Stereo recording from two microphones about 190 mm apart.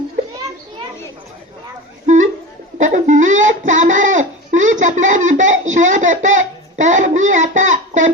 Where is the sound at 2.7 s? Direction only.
40° right (ahead or behind).